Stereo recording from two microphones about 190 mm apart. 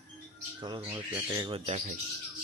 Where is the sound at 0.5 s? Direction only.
25° right (ahead or behind).